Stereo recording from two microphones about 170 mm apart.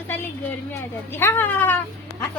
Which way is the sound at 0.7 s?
15° left (ahead or behind).